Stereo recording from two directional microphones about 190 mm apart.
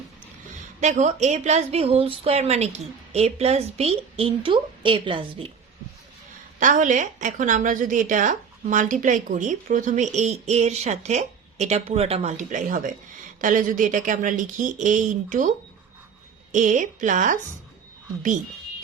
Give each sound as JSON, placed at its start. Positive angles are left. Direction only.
{"t": 0.8, "sound": "a woman's voice", "side_deg": -40}
{"t": 6.6, "sound": "a woman's voice", "side_deg": -40}
{"t": 16.5, "sound": "a woman's voice", "side_deg": -40}